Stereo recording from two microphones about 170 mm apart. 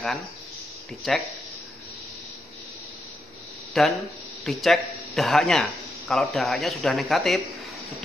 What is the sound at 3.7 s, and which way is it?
A man's voice, centre (ahead or behind).